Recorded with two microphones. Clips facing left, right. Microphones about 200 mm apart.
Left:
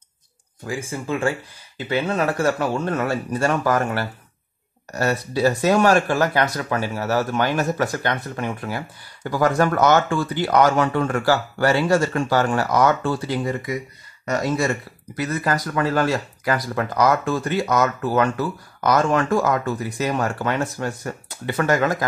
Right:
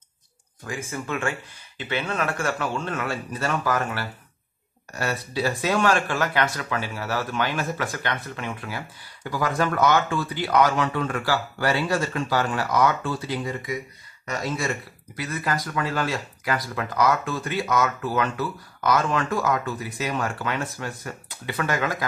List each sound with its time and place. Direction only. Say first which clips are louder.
0.7 s speech: left 4 dB; 30° left (ahead or behind)
15.1 s speech: left 5 dB; 45° left (ahead or behind)